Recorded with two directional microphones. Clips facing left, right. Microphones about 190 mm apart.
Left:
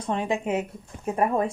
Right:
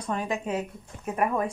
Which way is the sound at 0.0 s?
25° left (ahead or behind).